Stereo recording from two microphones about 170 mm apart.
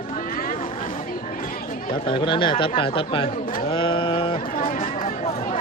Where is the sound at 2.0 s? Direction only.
30° left (ahead or behind).